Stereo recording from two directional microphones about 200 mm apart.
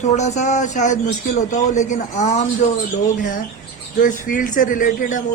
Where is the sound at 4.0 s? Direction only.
40° left (ahead or behind).